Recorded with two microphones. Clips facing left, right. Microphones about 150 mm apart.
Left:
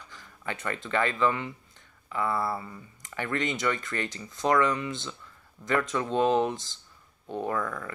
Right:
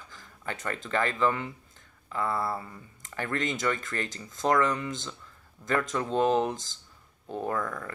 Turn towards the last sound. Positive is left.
turn(degrees=-40)  # may be behind; listen again after turning